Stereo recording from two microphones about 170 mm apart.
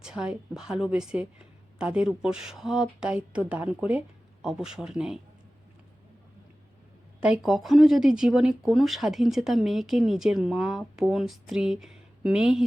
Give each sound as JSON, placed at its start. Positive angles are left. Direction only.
{"t": 0.0, "sound": "speech", "side_deg": -5}
{"t": 7.2, "sound": "speech", "side_deg": -5}